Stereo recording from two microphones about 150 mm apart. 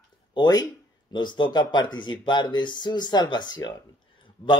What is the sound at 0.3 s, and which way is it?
Speech, 30° left (ahead or behind).